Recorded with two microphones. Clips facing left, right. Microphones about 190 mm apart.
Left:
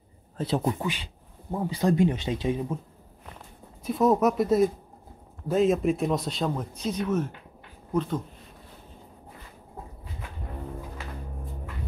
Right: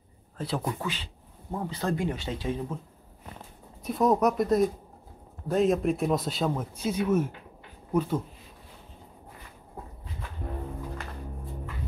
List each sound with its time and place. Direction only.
0.4 s speech: 20° left (ahead or behind)
3.8 s speech: centre (ahead or behind)